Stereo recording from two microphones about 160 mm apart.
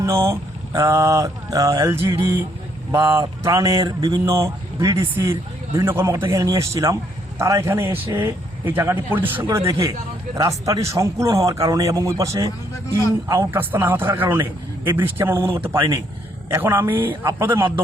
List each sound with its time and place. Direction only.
0.0 s a man's voice: 20° right (ahead or behind)